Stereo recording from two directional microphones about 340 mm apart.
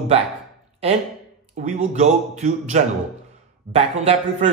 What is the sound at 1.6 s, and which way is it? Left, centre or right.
A man's voice, right.